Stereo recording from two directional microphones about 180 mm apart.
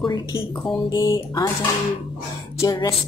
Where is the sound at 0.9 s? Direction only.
25° left (ahead or behind).